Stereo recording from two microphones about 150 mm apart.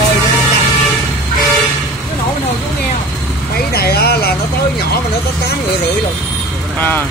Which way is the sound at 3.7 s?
90° left.